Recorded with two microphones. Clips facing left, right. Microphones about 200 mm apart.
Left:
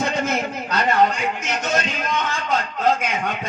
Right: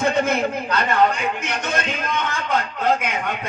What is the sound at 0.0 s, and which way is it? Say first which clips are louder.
A man's voice: right 3 dB; 55° right (ahead or behind).